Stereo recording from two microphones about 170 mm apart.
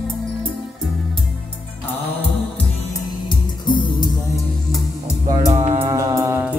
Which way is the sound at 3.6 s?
25° left (ahead or behind).